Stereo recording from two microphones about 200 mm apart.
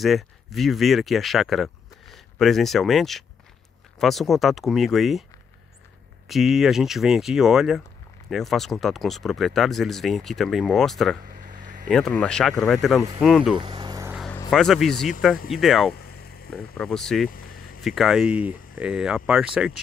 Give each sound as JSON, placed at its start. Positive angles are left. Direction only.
{"t": 0.0, "sound": "speech", "side_deg": 0}
{"t": 6.2, "sound": "speech", "side_deg": 0}
{"t": 11.4, "sound": "a sound", "side_deg": -40}
{"t": 11.9, "sound": "speech", "side_deg": 5}
{"t": 13.6, "sound": "a sound", "side_deg": -20}
{"t": 14.5, "sound": "speech", "side_deg": 0}
{"t": 15.9, "sound": "a sound", "side_deg": 50}
{"t": 16.7, "sound": "speech", "side_deg": 5}
{"t": 17.3, "sound": "vehicle", "side_deg": 45}
{"t": 17.8, "sound": "speech", "side_deg": 0}